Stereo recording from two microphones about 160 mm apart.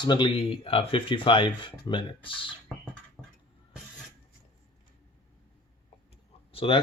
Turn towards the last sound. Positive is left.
turn(degrees=35)  # may be behind; listen again after turning